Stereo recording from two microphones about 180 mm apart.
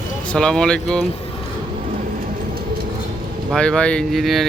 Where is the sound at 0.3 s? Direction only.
5° left (ahead or behind).